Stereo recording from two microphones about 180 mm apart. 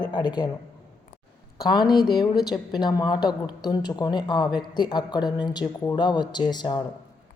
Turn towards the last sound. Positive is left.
turn(degrees=25)  # may be behind; listen again after turning